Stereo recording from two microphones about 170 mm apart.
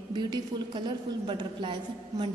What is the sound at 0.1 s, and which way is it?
A woman's voice, 25° right (ahead or behind).